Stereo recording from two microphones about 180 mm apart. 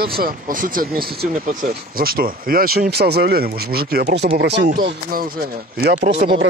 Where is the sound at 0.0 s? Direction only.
55° right (ahead or behind).